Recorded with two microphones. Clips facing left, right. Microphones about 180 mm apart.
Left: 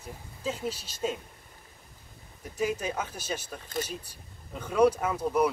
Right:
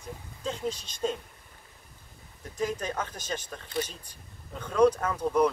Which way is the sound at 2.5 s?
10° left (ahead or behind).